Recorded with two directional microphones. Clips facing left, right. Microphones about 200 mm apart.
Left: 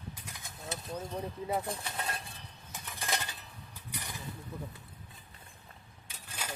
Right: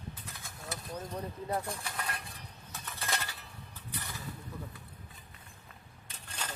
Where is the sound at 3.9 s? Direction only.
15° left (ahead or behind).